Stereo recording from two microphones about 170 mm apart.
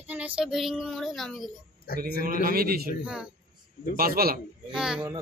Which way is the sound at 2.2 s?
60° right (ahead or behind).